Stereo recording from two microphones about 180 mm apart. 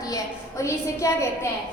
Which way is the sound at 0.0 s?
15° left (ahead or behind).